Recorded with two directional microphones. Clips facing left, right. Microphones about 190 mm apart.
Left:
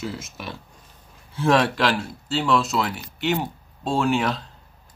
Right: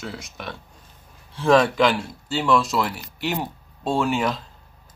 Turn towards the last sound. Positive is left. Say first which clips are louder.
# even
turn(degrees=0)  # may be behind; listen again after turning